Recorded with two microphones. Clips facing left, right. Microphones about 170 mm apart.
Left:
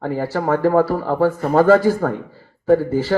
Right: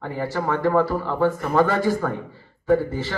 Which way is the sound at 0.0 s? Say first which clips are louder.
Left 5 dB; 40° left (ahead or behind).